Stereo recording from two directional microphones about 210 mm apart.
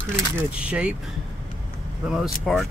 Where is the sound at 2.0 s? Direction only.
5° right (ahead or behind).